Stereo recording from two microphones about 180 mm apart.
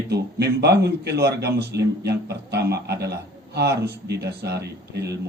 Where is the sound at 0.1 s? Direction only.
65° right (ahead or behind).